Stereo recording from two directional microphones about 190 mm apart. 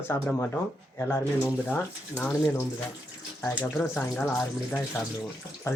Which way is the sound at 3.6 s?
10° left (ahead or behind).